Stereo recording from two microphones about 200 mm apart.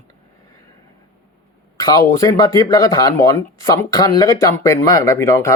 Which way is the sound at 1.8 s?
20° left (ahead or behind).